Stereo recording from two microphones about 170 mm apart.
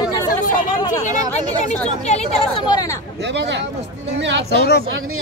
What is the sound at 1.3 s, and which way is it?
Speech, 45° left (ahead or behind).